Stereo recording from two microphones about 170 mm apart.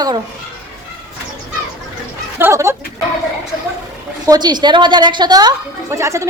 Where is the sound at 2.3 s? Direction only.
15° right (ahead or behind).